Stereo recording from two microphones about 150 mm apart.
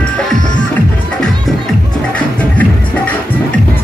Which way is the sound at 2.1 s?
10° left (ahead or behind).